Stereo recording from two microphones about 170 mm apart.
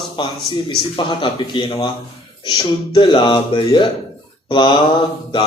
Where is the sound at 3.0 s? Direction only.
30° left (ahead or behind).